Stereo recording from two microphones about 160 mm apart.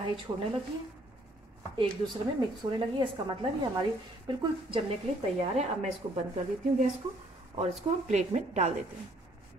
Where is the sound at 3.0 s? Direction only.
30° right (ahead or behind).